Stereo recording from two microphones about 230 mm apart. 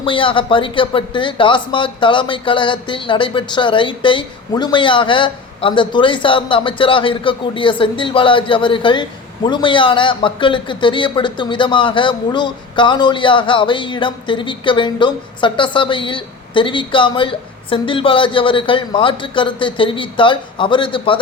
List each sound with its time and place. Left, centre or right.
0.0 s speech: left